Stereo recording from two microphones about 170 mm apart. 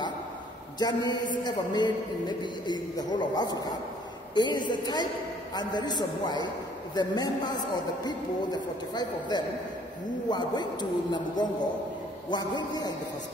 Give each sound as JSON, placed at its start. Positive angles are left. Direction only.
{"t": 0.7, "sound": "a man's voice", "side_deg": 25}